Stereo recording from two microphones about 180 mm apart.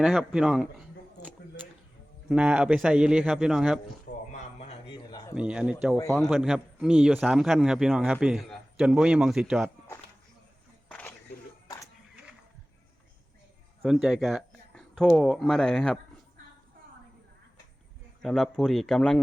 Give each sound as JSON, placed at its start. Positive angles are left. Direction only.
{"t": 0.0, "sound": "a man's voice", "side_deg": -5}
{"t": 2.3, "sound": "a man's voice", "side_deg": -5}
{"t": 4.1, "sound": "a sound", "side_deg": 50}
{"t": 5.3, "sound": "a man's voice", "side_deg": -5}
{"t": 10.8, "sound": "a sound", "side_deg": 10}
{"t": 13.8, "sound": "speech", "side_deg": 0}
{"t": 18.2, "sound": "a man's voice", "side_deg": 0}